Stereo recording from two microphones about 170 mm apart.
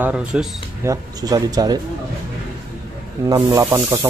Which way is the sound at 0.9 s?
20° right (ahead or behind).